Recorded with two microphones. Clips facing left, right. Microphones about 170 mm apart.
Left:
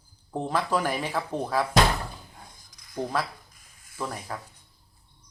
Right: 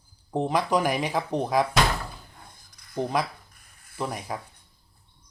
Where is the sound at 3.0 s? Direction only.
15° right (ahead or behind).